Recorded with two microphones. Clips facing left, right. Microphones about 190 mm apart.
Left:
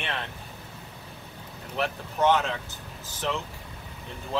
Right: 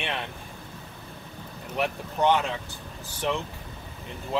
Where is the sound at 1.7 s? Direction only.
15° right (ahead or behind).